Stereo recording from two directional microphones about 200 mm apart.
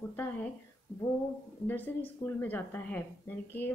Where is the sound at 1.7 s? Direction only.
10° left (ahead or behind).